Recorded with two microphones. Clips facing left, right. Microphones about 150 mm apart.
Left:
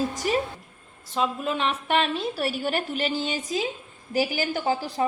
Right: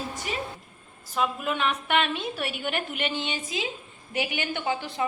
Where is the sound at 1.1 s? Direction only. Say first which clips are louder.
Left 2 dB; 30° left (ahead or behind).